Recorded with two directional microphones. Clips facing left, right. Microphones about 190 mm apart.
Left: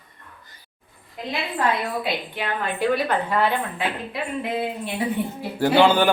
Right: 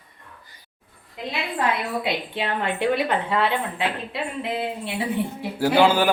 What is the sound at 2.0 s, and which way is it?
A woman's voice, 25° right (ahead or behind).